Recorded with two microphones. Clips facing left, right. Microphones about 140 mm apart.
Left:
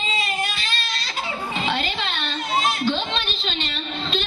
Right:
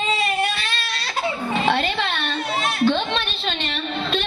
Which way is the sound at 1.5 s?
60° right (ahead or behind).